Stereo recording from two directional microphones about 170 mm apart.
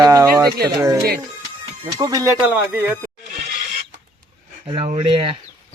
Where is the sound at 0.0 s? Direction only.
20° right (ahead or behind).